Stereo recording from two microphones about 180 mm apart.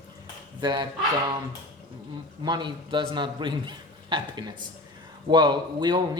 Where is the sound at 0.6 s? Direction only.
25° right (ahead or behind).